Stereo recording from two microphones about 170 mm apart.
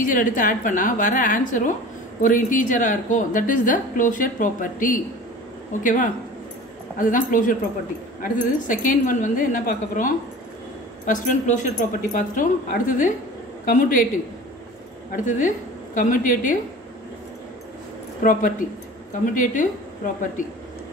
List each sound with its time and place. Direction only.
0.0 s a woman's voice: 50° left (ahead or behind)
15.2 s a woman's voice: 50° left (ahead or behind)
18.2 s a woman's voice: 50° left (ahead or behind)